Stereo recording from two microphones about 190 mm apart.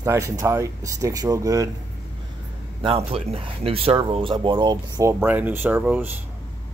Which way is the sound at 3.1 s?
30° right (ahead or behind).